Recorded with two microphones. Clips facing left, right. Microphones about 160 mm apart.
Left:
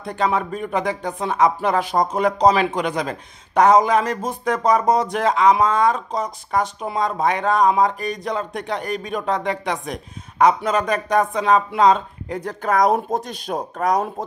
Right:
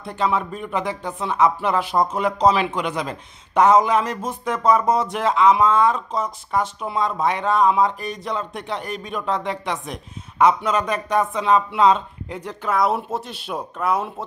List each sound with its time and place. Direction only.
0.2 s speech: 50° left (ahead or behind)